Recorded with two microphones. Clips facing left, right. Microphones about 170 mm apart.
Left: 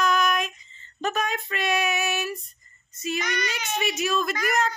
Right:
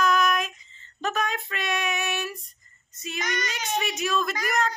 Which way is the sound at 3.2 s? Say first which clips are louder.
Left 1 dB; 40° right (ahead or behind).